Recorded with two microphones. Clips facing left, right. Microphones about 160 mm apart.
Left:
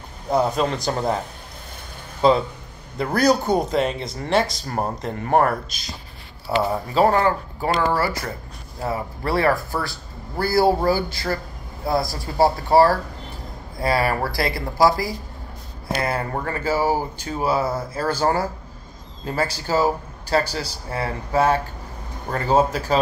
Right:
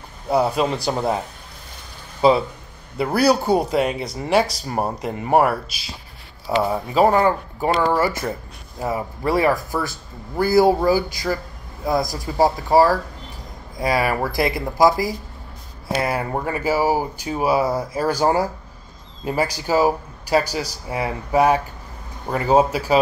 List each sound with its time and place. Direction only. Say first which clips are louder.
0.3 s speech: right 1 dB; 10° right (ahead or behind)
2.2 s speech: right 1 dB; 5° right (ahead or behind)
8.8 s speech: right 2 dB; 15° right (ahead or behind)